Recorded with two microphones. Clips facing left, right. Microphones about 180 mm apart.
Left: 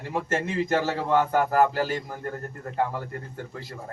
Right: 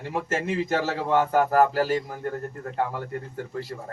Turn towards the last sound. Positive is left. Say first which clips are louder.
# right 5 dB
turn(degrees=0)  # may be behind; listen again after turning